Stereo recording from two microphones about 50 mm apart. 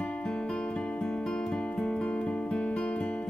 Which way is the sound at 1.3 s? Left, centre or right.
Centre.